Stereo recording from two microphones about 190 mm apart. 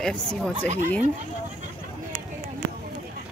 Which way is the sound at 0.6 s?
40° right (ahead or behind).